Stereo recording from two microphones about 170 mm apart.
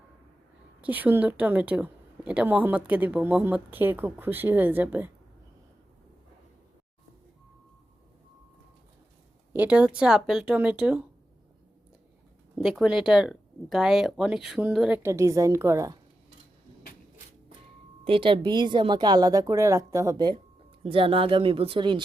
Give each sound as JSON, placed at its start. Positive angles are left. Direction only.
{"t": 0.8, "sound": "a woman's voice", "side_deg": -10}
{"t": 9.5, "sound": "a woman's voice", "side_deg": -10}
{"t": 12.5, "sound": "speech", "side_deg": 0}
{"t": 18.0, "sound": "a woman's voice", "side_deg": -30}